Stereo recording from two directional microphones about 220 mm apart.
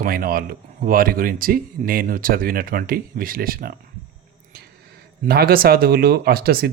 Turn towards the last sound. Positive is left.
turn(degrees=-45)  # may be behind; listen again after turning